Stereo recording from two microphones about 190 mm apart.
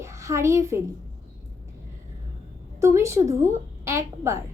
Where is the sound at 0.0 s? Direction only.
15° right (ahead or behind).